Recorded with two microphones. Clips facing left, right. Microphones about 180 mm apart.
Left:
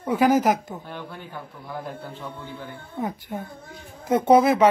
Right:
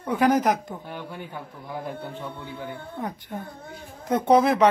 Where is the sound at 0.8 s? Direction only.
15° right (ahead or behind).